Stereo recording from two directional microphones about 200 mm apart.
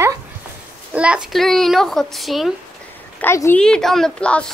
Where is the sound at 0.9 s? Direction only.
5° right (ahead or behind).